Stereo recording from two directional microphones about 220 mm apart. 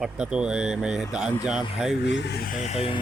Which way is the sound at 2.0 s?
50° left (ahead or behind).